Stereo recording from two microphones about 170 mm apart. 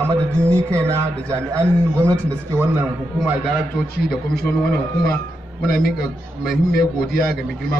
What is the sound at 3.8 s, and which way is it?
A man's voice, 65° left (ahead or behind).